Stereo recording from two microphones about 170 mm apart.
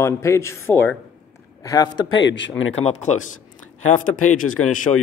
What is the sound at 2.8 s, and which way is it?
Speech, 40° left (ahead or behind).